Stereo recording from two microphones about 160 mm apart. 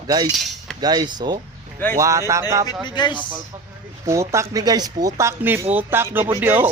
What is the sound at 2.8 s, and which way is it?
Speech, 30° left (ahead or behind).